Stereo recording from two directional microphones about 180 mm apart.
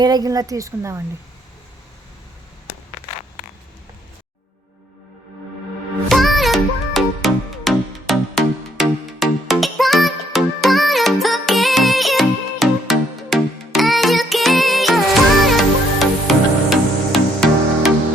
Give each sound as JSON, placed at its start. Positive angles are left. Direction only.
{"t": 0.0, "sound": "a woman's voice", "side_deg": -20}
{"t": 6.1, "sound": "music", "side_deg": 0}